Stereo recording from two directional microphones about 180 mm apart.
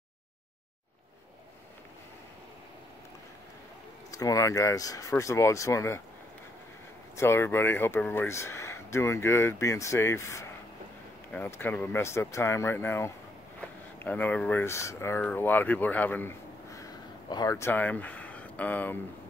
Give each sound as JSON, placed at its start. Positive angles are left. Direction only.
{"t": 4.1, "sound": "speech", "side_deg": 20}
{"t": 7.2, "sound": "speech", "side_deg": 15}